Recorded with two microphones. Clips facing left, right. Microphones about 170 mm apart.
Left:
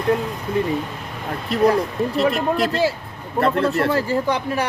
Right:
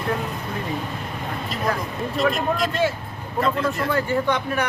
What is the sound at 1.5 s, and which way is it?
Speech, 65° left (ahead or behind).